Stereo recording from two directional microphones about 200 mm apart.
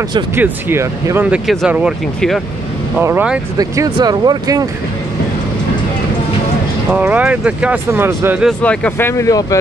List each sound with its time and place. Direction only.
0.4 s speech: 10° right (ahead or behind)
6.9 s speech: 5° right (ahead or behind)
8.5 s speech: 5° left (ahead or behind)